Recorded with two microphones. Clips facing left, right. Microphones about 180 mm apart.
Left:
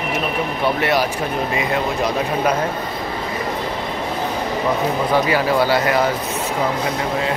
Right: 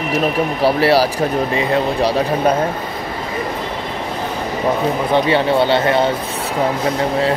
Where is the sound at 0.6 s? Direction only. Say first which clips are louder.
Right 5 dB; 35° right (ahead or behind).